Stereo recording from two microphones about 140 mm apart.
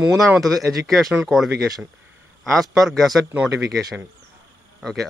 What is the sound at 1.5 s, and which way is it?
Speech, 15° right (ahead or behind).